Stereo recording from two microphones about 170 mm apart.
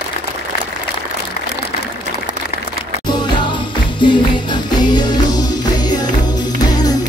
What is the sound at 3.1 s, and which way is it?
Music, 25° left (ahead or behind).